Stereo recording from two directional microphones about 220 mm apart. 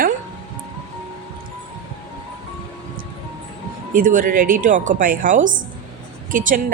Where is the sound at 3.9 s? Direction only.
40° right (ahead or behind).